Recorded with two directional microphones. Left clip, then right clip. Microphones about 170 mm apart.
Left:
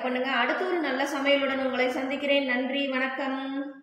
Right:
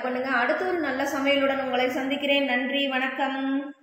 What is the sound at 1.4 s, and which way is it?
A woman's voice, 35° right (ahead or behind).